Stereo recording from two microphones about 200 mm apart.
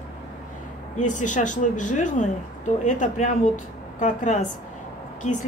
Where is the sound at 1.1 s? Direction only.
40° left (ahead or behind).